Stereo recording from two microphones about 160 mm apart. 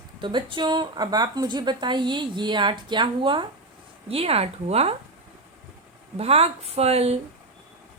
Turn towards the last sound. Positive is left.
turn(degrees=-40)  # may be behind; listen again after turning